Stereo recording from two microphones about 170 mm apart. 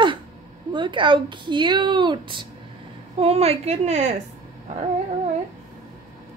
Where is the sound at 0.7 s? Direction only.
30° right (ahead or behind).